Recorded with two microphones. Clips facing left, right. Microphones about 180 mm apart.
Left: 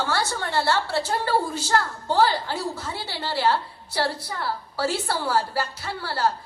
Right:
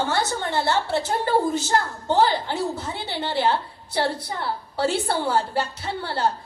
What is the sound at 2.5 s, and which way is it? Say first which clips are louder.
A woman's voice: right 3 dB; 25° right (ahead or behind).